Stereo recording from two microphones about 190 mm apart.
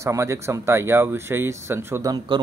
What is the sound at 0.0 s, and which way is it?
Speech, 15° right (ahead or behind).